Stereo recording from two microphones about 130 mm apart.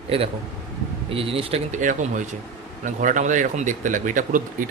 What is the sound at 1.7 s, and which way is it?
Speech, 75° right (ahead or behind).